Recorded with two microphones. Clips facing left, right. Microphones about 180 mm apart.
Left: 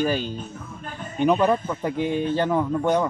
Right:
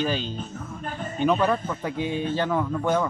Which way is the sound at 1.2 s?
15° left (ahead or behind).